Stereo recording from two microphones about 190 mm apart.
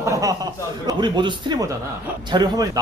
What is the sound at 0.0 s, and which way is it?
A man's voice, 15° right (ahead or behind).